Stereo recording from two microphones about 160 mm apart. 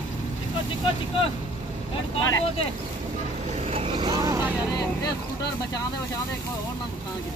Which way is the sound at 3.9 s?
25° right (ahead or behind).